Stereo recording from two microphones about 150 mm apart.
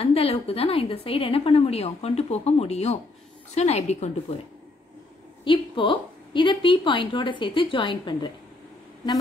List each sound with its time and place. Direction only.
0.0 s a woman's voice: 40° left (ahead or behind)
5.4 s a woman's voice: 35° left (ahead or behind)